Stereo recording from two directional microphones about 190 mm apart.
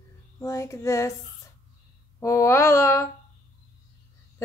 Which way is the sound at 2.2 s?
15° left (ahead or behind).